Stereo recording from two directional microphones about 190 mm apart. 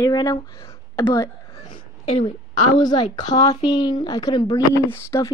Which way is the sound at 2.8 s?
20° left (ahead or behind).